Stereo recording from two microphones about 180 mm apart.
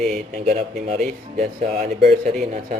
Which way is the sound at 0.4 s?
35° right (ahead or behind).